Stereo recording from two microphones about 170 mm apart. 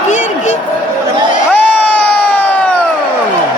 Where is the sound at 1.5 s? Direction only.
10° left (ahead or behind).